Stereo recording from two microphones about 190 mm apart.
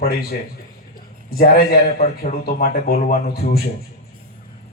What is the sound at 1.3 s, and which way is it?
Speech, 50° left (ahead or behind).